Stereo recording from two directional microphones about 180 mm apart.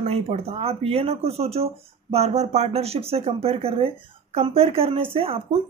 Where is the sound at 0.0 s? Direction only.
35° right (ahead or behind).